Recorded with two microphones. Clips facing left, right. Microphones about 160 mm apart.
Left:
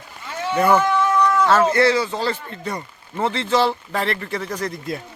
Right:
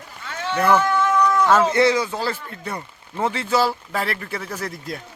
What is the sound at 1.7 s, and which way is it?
Speech, 15° right (ahead or behind).